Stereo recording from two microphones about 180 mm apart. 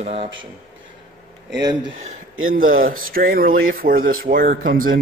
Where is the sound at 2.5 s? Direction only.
50° right (ahead or behind).